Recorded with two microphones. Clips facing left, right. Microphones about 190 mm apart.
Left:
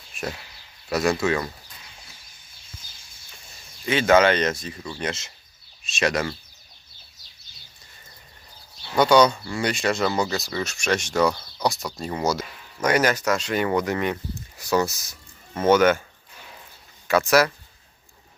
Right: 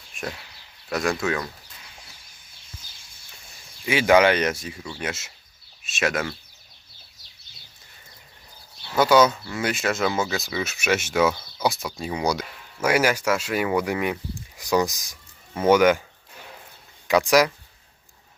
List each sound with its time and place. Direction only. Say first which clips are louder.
0.1 s a sound: left 2 dB; centre (ahead or behind)
0.9 s speech: left 3 dB; centre (ahead or behind)
3.8 s speech: even; 10° right (ahead or behind)
9.0 s speech: left 1 dB; 5° right (ahead or behind)
17.1 s speech: right 1 dB; 15° right (ahead or behind)